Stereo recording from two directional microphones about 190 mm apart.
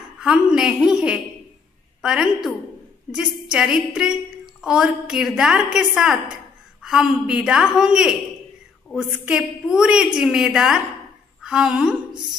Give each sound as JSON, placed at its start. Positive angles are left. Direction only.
{"t": 0.2, "sound": "a woman's voice", "side_deg": -5}
{"t": 12.1, "sound": "a woman's voice", "side_deg": -25}